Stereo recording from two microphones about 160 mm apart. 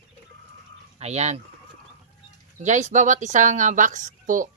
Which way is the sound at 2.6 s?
50° right (ahead or behind).